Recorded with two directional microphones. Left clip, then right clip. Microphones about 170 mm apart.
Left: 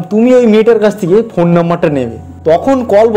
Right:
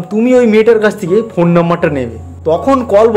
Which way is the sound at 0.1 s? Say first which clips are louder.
Left 2 dB; 5° left (ahead or behind).